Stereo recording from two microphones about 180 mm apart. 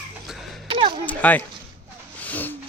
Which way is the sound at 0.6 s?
30° right (ahead or behind).